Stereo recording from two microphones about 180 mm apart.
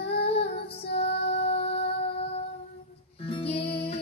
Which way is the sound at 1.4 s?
35° left (ahead or behind).